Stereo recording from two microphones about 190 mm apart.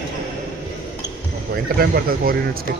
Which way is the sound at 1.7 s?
50° right (ahead or behind).